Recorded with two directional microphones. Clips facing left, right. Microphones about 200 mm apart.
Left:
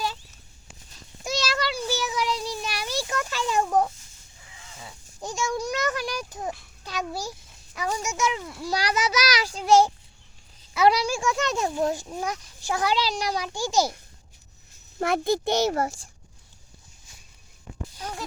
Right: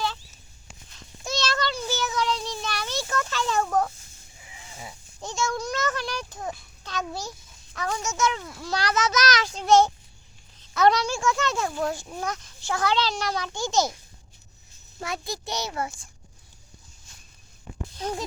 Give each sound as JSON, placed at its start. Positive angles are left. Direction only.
{"t": 1.2, "sound": "child singing", "side_deg": 15}
{"t": 5.2, "sound": "a sound", "side_deg": 15}
{"t": 8.6, "sound": "a child's voice", "side_deg": 15}
{"t": 14.9, "sound": "a child's voice", "side_deg": 55}